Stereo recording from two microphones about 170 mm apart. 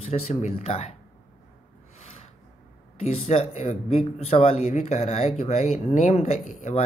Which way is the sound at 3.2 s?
35° left (ahead or behind).